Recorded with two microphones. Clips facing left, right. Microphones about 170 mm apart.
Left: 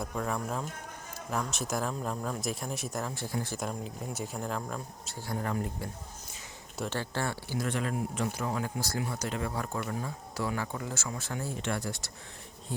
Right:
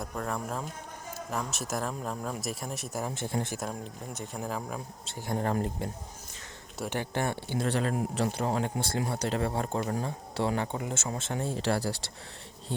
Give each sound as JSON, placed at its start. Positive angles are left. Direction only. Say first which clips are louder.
{"t": 0.0, "sound": "speech", "louder": "left 1 dB", "side_deg": 0}
{"t": 3.0, "sound": "speech", "louder": "right 6 dB", "side_deg": -20}
{"t": 3.6, "sound": "speech", "louder": "left 1 dB", "side_deg": 0}
{"t": 5.8, "sound": "speech", "louder": "right 4 dB", "side_deg": -25}
{"t": 7.7, "sound": "speech", "louder": "right 4 dB", "side_deg": -35}